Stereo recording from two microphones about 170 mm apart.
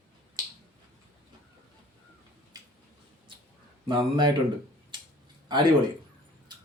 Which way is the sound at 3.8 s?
30° right (ahead or behind).